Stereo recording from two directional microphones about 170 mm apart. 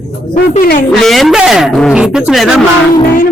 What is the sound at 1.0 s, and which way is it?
Speech, centre (ahead or behind).